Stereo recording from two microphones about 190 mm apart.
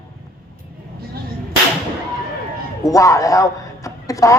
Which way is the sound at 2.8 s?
15° left (ahead or behind).